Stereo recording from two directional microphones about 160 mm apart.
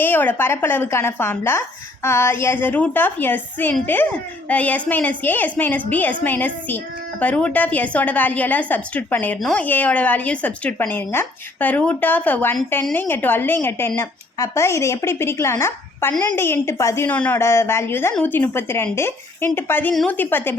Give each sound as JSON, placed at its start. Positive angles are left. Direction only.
{"t": 0.0, "sound": "a child's voice", "side_deg": 10}